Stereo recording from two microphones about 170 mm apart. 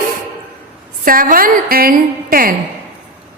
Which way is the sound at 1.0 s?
55° right (ahead or behind).